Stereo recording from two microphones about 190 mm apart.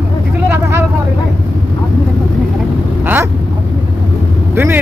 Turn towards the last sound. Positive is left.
turn(degrees=-10)  # may be behind; listen again after turning